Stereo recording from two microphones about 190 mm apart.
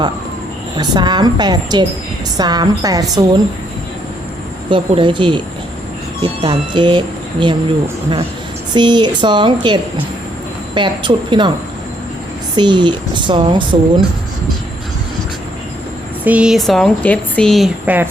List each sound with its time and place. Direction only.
0.8 s a woman's voice: 25° right (ahead or behind)
4.7 s a woman's voice: 25° right (ahead or behind)
8.7 s a woman's voice: 25° right (ahead or behind)
12.5 s a woman's voice: 25° right (ahead or behind)
16.2 s speech: 5° right (ahead or behind)